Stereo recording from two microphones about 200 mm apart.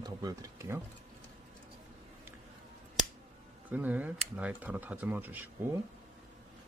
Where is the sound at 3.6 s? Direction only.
10° right (ahead or behind).